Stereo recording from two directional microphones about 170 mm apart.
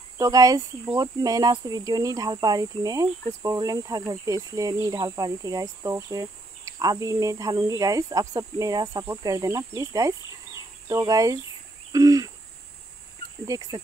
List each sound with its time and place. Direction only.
0.2 s speech: 20° right (ahead or behind)
13.5 s speech: 20° right (ahead or behind)